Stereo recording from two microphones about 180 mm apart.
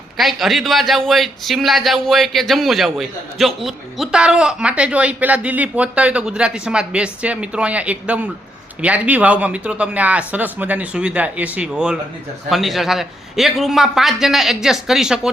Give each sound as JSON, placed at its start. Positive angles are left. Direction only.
{"t": 0.2, "sound": "a man's voice", "side_deg": 0}